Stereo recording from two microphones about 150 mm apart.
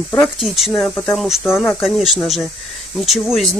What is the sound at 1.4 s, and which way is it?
Speech, 15° left (ahead or behind).